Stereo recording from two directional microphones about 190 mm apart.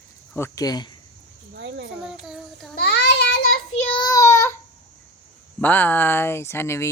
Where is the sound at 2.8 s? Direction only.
60° left (ahead or behind).